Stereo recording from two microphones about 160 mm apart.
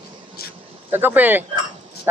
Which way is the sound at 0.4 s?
75° left (ahead or behind).